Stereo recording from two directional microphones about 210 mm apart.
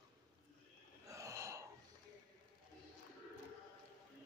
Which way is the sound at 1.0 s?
15° right (ahead or behind).